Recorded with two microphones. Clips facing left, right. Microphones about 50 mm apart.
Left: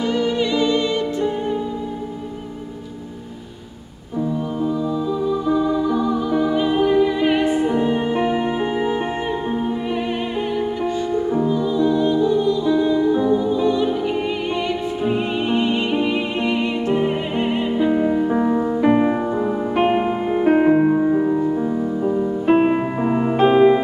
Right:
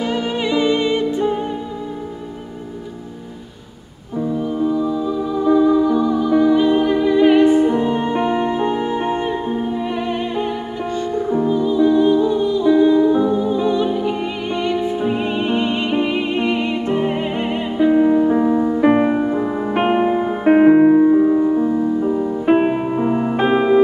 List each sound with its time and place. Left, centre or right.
0.0 s music: centre
4.6 s music: centre
11.2 s music: centre
18.8 s music: centre
23.0 s music: centre
23.3 s music: centre